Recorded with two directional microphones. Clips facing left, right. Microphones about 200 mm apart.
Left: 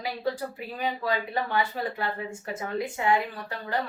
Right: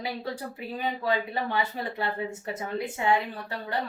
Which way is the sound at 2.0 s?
25° right (ahead or behind).